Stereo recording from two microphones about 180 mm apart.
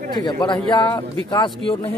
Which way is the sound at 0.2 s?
25° left (ahead or behind).